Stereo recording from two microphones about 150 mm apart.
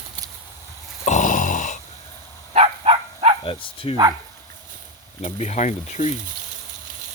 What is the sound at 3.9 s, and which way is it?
Speech, 25° right (ahead or behind).